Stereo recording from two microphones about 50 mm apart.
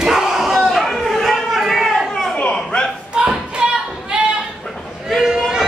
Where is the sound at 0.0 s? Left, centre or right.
Centre.